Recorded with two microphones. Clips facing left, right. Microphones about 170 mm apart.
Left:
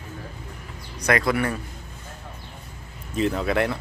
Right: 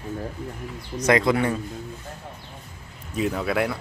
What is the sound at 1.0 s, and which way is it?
Speech, 20° right (ahead or behind).